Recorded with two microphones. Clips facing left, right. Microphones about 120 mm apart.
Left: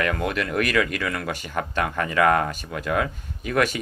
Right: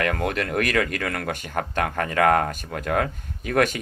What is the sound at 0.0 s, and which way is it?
Speech, 55° right (ahead or behind).